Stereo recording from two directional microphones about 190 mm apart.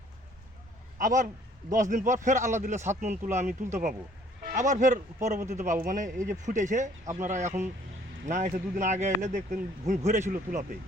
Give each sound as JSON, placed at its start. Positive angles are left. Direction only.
{"t": 0.9, "sound": "a man's voice", "side_deg": -45}